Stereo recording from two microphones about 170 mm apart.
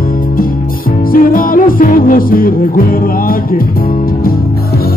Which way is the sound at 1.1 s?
55° left (ahead or behind).